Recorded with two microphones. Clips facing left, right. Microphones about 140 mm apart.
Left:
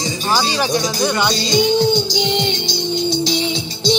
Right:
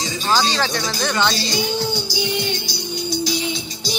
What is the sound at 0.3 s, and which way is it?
Speech, 15° left (ahead or behind).